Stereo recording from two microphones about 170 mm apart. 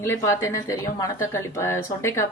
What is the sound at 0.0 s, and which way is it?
A woman's voice, 15° left (ahead or behind).